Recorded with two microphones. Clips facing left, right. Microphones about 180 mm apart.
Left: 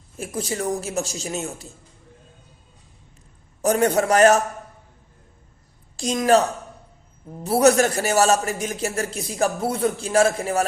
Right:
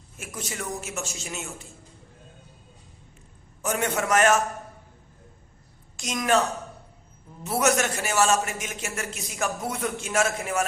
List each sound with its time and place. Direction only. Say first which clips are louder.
0.2 s a man's voice: left 9 dB; 35° left (ahead or behind)
3.6 s a man's voice: left 8 dB; 35° left (ahead or behind)
6.0 s a man's voice: left 6 dB; 30° left (ahead or behind)
7.4 s a man's voice: left 7 dB; 35° left (ahead or behind)